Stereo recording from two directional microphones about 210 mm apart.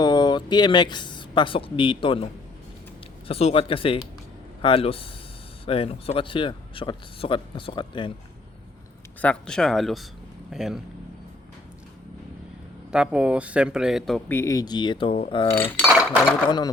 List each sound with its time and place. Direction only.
0.0 s speech: 20° left (ahead or behind)
9.2 s speech: 5° left (ahead or behind)
12.9 s speech: 5° right (ahead or behind); by 15.4 s 25° left (ahead or behind)
15.5 s cutlery: 5° left (ahead or behind)
15.9 s dishes: 5° right (ahead or behind)
16.5 s speech: 20° left (ahead or behind)